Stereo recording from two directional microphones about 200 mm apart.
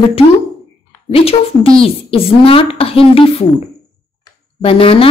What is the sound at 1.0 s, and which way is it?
Speech, 30° left (ahead or behind).